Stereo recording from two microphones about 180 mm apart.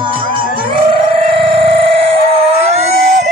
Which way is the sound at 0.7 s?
30° right (ahead or behind).